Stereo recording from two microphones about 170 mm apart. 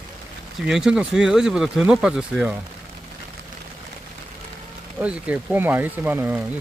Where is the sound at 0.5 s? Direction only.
5° right (ahead or behind).